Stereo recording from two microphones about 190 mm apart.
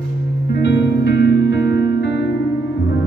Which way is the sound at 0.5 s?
65° left (ahead or behind).